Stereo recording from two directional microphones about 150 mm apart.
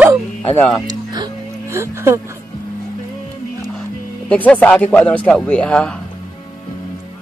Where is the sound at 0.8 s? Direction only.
25° right (ahead or behind).